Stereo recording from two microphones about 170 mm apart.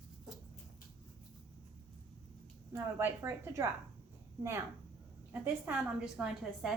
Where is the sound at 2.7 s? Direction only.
15° right (ahead or behind).